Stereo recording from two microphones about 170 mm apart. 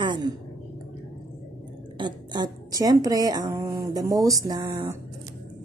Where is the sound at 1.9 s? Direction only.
25° right (ahead or behind).